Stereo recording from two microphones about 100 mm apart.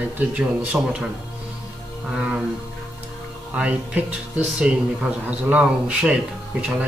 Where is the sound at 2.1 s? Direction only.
10° right (ahead or behind).